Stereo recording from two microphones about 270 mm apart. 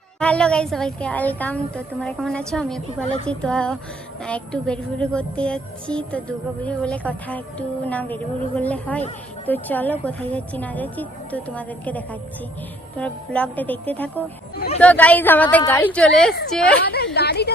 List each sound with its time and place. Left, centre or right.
0.2 s a woman's voice: centre
17.2 s a woman's voice: left